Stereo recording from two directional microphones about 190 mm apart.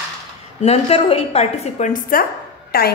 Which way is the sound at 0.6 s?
30° left (ahead or behind).